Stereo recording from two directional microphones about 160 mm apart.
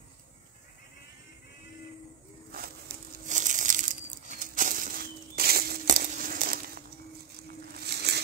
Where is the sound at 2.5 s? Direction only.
75° right (ahead or behind).